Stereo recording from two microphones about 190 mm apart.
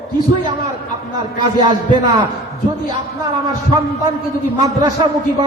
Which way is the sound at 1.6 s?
25° right (ahead or behind).